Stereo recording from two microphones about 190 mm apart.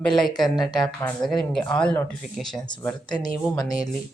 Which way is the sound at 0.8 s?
Centre (ahead or behind).